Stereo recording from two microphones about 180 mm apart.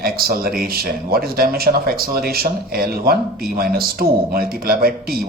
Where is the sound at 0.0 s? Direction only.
55° right (ahead or behind).